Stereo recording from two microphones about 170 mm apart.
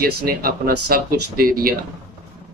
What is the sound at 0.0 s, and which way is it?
Speech, 60° right (ahead or behind).